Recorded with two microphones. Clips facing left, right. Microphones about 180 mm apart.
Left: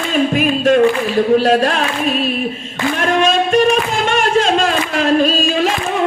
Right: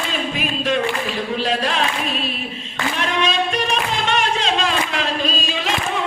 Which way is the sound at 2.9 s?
45° left (ahead or behind).